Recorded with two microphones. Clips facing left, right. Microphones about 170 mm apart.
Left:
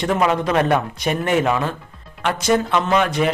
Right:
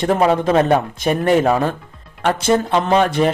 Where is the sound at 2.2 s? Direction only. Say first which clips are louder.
Right 2 dB; 30° right (ahead or behind).